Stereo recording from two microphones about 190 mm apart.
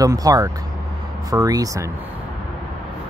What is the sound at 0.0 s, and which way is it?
Speech, 20° right (ahead or behind).